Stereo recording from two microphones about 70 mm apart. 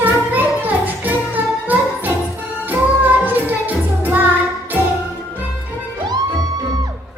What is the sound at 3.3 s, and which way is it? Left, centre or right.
Music, right.